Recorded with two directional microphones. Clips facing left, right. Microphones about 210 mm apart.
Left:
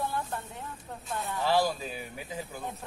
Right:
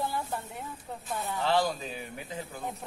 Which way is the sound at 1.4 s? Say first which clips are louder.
Left 1 dB; 5° left (ahead or behind).